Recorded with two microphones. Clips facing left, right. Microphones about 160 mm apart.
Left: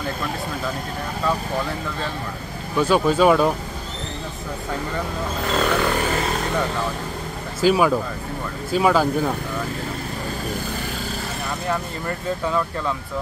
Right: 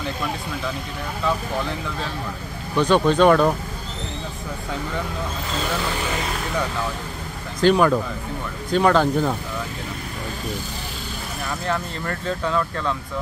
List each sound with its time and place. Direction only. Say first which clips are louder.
2.7 s speech: right 1 dB; 5° left (ahead or behind)
5.6 s vehicle: left 5 dB; 60° left (ahead or behind)
7.6 s speech: right 1 dB; 5° left (ahead or behind)
11.6 s speech: even; 10° left (ahead or behind)